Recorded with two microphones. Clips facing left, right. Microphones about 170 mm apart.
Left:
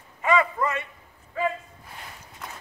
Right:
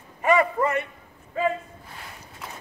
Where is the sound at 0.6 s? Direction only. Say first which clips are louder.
Right 3 dB; 35° right (ahead or behind).